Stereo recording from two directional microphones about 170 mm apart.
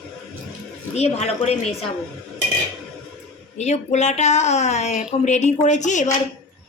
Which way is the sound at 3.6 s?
40° left (ahead or behind).